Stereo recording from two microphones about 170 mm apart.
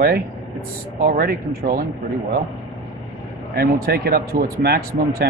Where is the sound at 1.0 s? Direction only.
65° right (ahead or behind).